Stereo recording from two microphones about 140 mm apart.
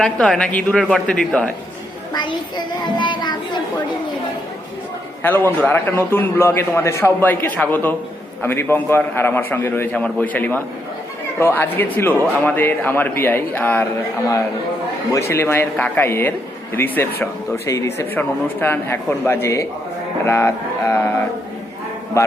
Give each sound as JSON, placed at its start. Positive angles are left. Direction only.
{"t": 0.0, "sound": "speech", "side_deg": 5}
{"t": 2.1, "sound": "a child's voice", "side_deg": 30}
{"t": 5.2, "sound": "a man's voice", "side_deg": 15}
{"t": 15.1, "sound": "a man's voice", "side_deg": 20}